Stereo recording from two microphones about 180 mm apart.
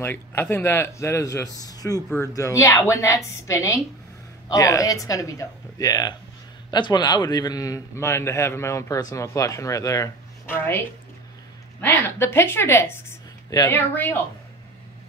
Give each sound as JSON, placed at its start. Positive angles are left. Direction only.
{"t": 0.0, "sound": "a man's voice", "side_deg": 10}